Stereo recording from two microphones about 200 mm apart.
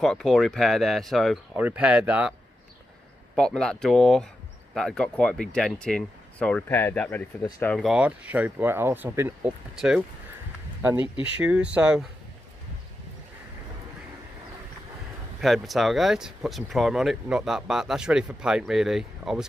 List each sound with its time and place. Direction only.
0.0 s speech: centre (ahead or behind)
3.3 s speech: 5° left (ahead or behind)
7.7 s speech: centre (ahead or behind)
15.4 s speech: centre (ahead or behind)